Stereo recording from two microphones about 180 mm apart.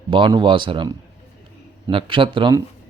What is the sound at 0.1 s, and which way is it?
Speech, 25° right (ahead or behind).